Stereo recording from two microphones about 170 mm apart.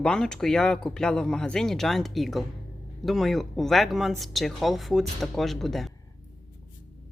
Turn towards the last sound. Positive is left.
turn(degrees=0)  # may be behind; listen again after turning